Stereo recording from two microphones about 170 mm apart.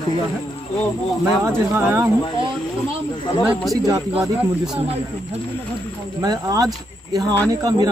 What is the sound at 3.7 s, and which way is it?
Speech, 20° right (ahead or behind).